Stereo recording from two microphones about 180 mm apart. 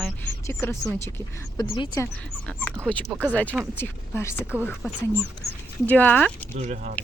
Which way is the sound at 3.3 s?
10° left (ahead or behind).